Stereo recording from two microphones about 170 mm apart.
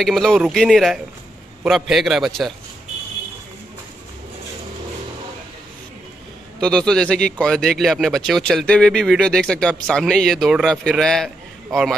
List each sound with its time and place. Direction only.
0.0 s speech: centre (ahead or behind)
6.6 s speech: 5° left (ahead or behind)